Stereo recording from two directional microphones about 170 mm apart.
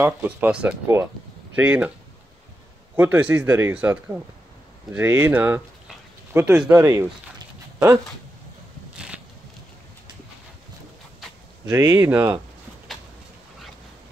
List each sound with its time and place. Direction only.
0.0 s speech: 10° right (ahead or behind)
3.0 s speech: 10° right (ahead or behind)
6.7 s speech: 15° right (ahead or behind)
8.9 s a sound: 5° right (ahead or behind)
11.7 s speech: 10° right (ahead or behind)
12.9 s a sound: centre (ahead or behind)